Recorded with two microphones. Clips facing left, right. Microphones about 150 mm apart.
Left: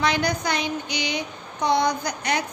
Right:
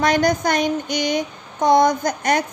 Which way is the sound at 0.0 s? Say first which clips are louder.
Right 6 dB; 45° right (ahead or behind).